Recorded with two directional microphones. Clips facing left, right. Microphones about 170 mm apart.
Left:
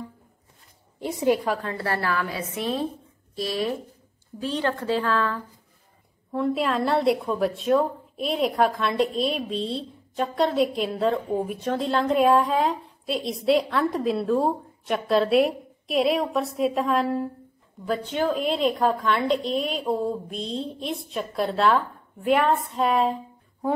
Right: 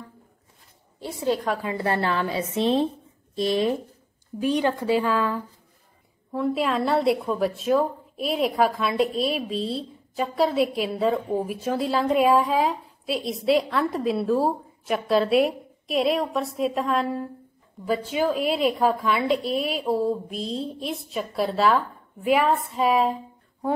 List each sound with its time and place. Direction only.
0.9 s a woman's voice: 15° left (ahead or behind)
1.6 s a woman's voice: 15° right (ahead or behind)
6.3 s a woman's voice: centre (ahead or behind)